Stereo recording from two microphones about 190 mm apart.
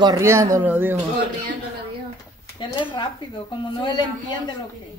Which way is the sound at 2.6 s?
25° left (ahead or behind).